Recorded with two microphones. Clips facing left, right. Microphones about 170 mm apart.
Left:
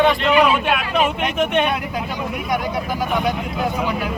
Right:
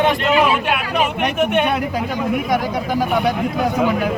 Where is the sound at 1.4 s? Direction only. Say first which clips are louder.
Right 1 dB; 5° right (ahead or behind).